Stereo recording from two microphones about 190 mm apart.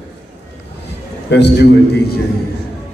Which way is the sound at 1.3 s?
65° left (ahead or behind).